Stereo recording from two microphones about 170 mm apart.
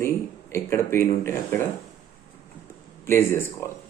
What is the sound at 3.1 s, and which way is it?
Speech, 15° left (ahead or behind).